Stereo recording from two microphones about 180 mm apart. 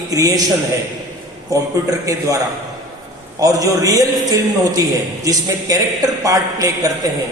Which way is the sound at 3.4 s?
20° right (ahead or behind).